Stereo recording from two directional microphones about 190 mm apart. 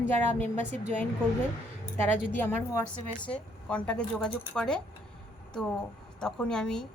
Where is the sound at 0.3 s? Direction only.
10° left (ahead or behind).